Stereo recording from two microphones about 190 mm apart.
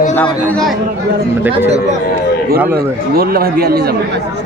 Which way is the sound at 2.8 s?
55° right (ahead or behind).